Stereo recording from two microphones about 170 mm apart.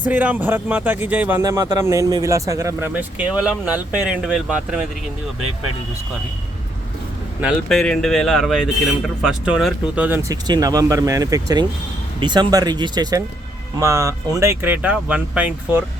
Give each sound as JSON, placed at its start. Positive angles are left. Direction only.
{"t": 0.0, "sound": "speech", "side_deg": -10}
{"t": 1.4, "sound": "speech", "side_deg": -20}
{"t": 7.4, "sound": "speech", "side_deg": 5}
{"t": 10.2, "sound": "speech", "side_deg": -20}